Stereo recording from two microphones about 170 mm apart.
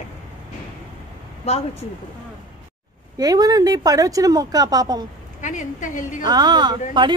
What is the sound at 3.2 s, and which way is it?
Speech, 20° right (ahead or behind).